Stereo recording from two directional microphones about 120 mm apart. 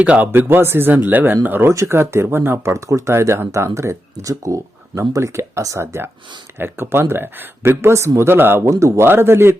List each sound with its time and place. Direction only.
0.0 s speech: 15° right (ahead or behind)